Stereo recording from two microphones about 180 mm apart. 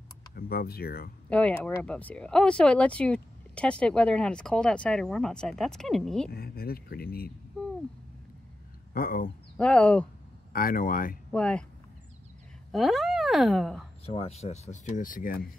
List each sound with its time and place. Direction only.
0.3 s speech: 55° left (ahead or behind)
1.3 s speech: 5° left (ahead or behind)
6.3 s speech: 55° left (ahead or behind)
8.9 s speech: 50° left (ahead or behind)
9.6 s speech: 5° left (ahead or behind)
10.5 s speech: 55° left (ahead or behind)
11.3 s speech: 5° left (ahead or behind)
12.7 s speech: centre (ahead or behind)
14.0 s speech: 35° left (ahead or behind); by 15.4 s 50° left (ahead or behind)